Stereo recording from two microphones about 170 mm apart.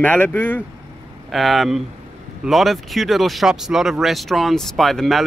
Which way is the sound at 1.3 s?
Centre (ahead or behind).